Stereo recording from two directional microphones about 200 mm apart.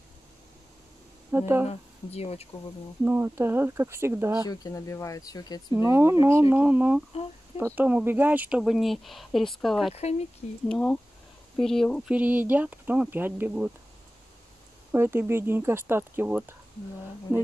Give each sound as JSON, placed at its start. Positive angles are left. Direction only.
{"t": 1.3, "sound": "speech", "side_deg": -10}
{"t": 1.7, "sound": "speech", "side_deg": 30}
{"t": 3.1, "sound": "speech", "side_deg": -10}
{"t": 4.5, "sound": "speech", "side_deg": 15}
{"t": 5.8, "sound": "speech", "side_deg": -10}
{"t": 9.9, "sound": "speech", "side_deg": 35}
{"t": 10.7, "sound": "speech", "side_deg": 5}
{"t": 14.9, "sound": "speech", "side_deg": -10}